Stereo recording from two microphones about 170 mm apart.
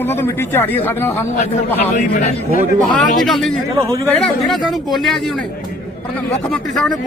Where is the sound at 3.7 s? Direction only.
15° right (ahead or behind).